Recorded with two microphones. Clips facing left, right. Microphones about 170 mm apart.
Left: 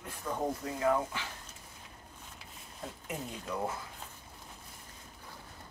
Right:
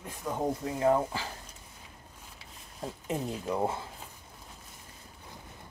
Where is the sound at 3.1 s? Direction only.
30° right (ahead or behind).